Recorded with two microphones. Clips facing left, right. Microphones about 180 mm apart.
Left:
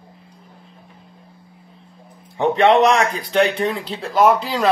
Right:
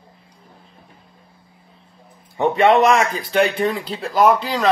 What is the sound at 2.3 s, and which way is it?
Speech, centre (ahead or behind).